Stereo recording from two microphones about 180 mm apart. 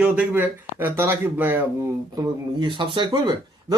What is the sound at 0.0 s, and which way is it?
Speech, 10° right (ahead or behind).